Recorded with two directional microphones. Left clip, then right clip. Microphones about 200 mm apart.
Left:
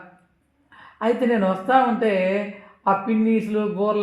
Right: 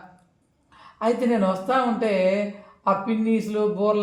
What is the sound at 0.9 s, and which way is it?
A man's voice, 40° left (ahead or behind).